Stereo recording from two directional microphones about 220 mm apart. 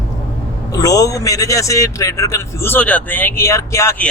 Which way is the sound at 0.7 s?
15° left (ahead or behind).